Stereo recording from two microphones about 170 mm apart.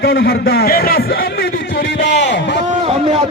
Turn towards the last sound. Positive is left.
turn(degrees=-35)  # may be behind; listen again after turning